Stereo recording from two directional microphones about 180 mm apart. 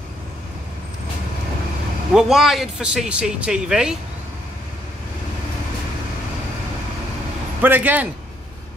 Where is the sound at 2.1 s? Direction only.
Centre (ahead or behind).